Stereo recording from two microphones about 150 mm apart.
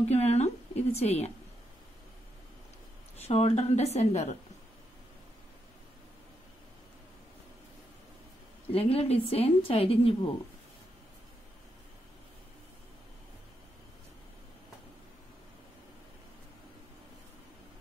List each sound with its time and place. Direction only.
0.1 s a woman's voice: 45° left (ahead or behind)
3.2 s a woman's voice: 45° left (ahead or behind)
8.7 s a woman's voice: 40° left (ahead or behind)